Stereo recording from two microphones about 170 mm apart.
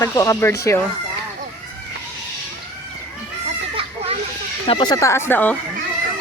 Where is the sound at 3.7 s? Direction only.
35° right (ahead or behind).